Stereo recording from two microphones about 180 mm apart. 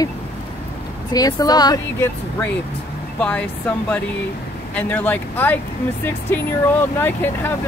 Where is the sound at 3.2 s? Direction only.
10° left (ahead or behind).